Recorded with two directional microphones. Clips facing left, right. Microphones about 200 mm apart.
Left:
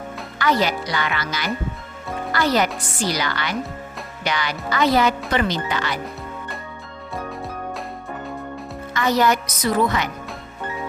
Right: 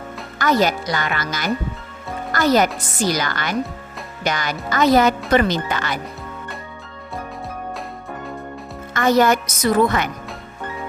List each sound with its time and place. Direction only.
0.3 s a woman's voice: 45° right (ahead or behind)
8.9 s a woman's voice: 50° right (ahead or behind)